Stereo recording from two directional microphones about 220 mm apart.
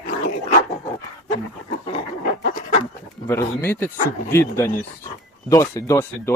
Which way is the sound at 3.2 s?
10° left (ahead or behind).